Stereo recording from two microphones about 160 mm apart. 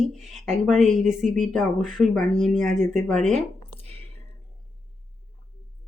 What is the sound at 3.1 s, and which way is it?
Speech, 45° right (ahead or behind).